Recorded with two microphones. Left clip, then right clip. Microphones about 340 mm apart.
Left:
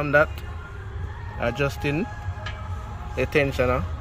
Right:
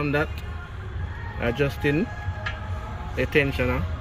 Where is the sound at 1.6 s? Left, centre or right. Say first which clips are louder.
Right 1 dB; centre.